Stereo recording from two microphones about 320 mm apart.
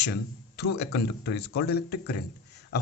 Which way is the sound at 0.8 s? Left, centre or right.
Left.